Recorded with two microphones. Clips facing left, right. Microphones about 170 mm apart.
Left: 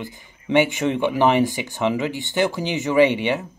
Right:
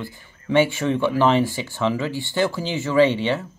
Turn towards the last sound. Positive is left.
turn(degrees=15)  # may be behind; listen again after turning